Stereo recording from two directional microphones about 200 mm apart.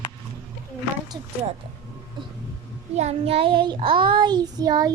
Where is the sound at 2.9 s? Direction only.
30° right (ahead or behind).